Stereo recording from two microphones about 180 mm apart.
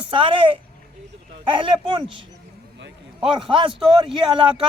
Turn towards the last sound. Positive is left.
turn(degrees=-30)  # may be behind; listen again after turning